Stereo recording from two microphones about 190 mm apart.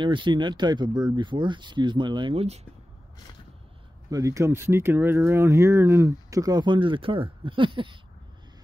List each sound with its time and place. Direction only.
0.0 s speech: 25° right (ahead or behind)
4.1 s speech: 15° right (ahead or behind)